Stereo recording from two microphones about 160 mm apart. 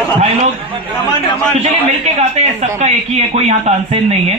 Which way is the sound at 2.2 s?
45° right (ahead or behind).